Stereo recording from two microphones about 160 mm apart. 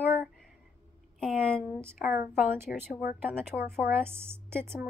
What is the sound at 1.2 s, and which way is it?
A woman's voice, 5° left (ahead or behind).